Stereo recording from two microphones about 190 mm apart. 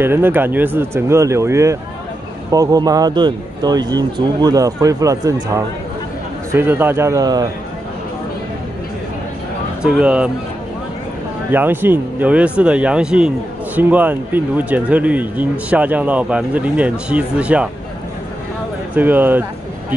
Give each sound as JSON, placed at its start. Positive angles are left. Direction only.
{"t": 0.0, "sound": "speech", "side_deg": -10}
{"t": 9.8, "sound": "speech", "side_deg": -5}
{"t": 11.5, "sound": "speech", "side_deg": -10}
{"t": 18.9, "sound": "speech", "side_deg": -10}